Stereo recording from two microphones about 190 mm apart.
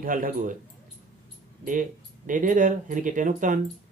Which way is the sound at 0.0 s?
45° right (ahead or behind).